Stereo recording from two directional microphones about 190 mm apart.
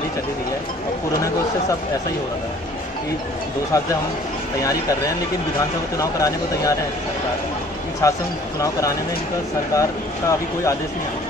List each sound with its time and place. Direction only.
3.7 s speech: 15° left (ahead or behind)
8.0 s speech: 15° left (ahead or behind)